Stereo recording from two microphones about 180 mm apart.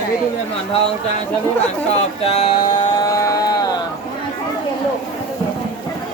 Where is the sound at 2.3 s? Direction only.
35° left (ahead or behind).